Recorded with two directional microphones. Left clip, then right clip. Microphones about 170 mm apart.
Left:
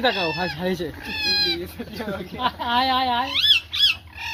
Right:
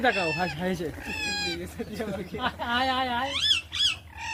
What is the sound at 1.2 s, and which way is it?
Speech, 20° right (ahead or behind).